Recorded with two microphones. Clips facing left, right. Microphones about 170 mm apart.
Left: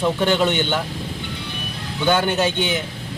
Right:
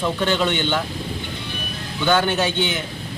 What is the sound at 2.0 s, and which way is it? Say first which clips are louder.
Speech: even; 15° left (ahead or behind).